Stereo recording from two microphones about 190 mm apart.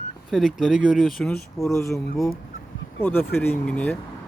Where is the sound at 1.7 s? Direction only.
15° left (ahead or behind).